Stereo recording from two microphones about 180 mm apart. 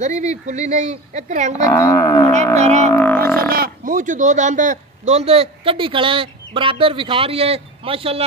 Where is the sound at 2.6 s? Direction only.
40° right (ahead or behind).